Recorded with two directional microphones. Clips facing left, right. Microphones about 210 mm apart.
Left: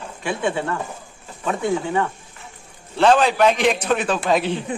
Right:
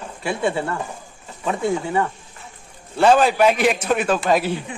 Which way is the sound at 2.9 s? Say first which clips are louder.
Right 1 dB; 10° right (ahead or behind).